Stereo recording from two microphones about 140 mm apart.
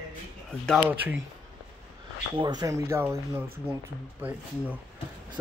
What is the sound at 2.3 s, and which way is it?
Speech, 30° right (ahead or behind).